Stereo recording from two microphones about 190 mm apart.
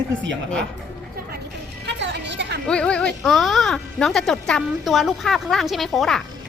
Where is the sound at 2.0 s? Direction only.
65° right (ahead or behind).